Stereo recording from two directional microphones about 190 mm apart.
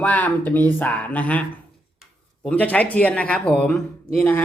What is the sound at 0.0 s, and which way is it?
Speech, 10° left (ahead or behind).